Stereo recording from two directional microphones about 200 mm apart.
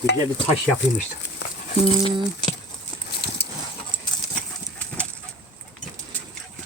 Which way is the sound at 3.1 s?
55° left (ahead or behind).